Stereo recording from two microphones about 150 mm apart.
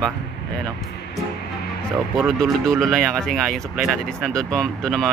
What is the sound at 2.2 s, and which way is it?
Speech, centre (ahead or behind).